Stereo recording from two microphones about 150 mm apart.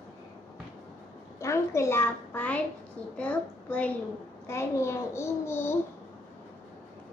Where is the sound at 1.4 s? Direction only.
20° left (ahead or behind).